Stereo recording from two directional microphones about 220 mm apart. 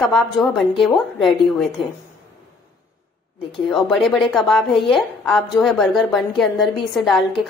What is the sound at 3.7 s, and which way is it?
A woman's voice, centre (ahead or behind).